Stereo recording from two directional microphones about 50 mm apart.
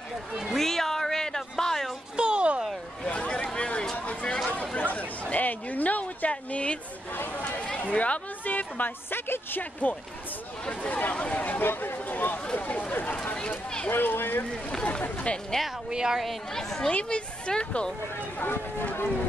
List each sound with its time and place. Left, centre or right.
0.4 s a sound: centre
2.1 s a sound: centre
3.1 s a sound: centre
5.3 s a sound: left
7.1 s a woman's voice: left
9.6 s speech: left
11.4 s speech: left
13.8 s speech: left
14.7 s speech: left
15.9 s speech: centre
16.5 s speech: centre
18.4 s speech: left